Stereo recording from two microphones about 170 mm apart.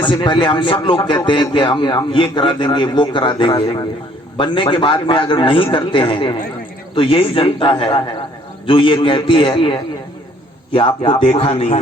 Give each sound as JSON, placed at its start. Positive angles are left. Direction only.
{"t": 0.0, "sound": "a man's voice", "side_deg": 30}
{"t": 10.8, "sound": "a man's voice", "side_deg": 30}